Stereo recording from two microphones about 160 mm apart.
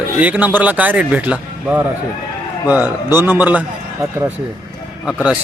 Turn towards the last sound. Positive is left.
turn(degrees=-5)  # may be behind; listen again after turning